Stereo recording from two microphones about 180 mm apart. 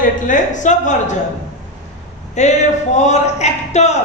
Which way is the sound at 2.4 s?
40° left (ahead or behind).